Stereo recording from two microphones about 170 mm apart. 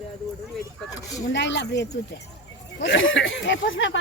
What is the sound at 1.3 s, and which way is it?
Speech, 90° left.